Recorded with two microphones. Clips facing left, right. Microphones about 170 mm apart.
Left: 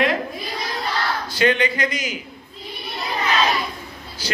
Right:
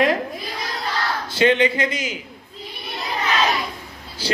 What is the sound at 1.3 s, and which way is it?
Speech, 25° right (ahead or behind).